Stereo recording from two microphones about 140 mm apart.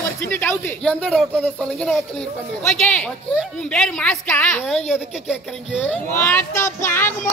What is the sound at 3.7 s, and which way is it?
Speech, 5° left (ahead or behind).